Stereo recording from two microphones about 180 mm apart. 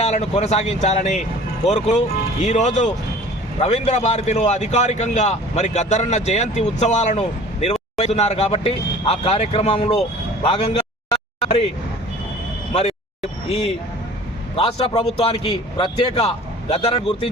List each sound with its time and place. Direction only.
0.0 s a man's voice: 35° left (ahead or behind)
10.4 s a sound: 30° left (ahead or behind)
13.5 s a man's voice: 35° left (ahead or behind)